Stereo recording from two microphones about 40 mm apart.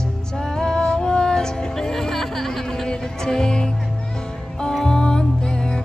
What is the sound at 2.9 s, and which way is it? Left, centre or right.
Music, centre.